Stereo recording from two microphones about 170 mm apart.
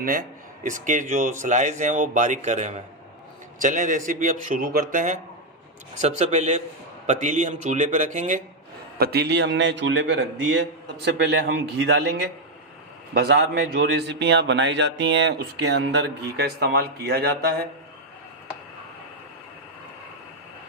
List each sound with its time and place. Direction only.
0.0 s speech: 55° right (ahead or behind)
9.0 s a man's voice: 70° right (ahead or behind)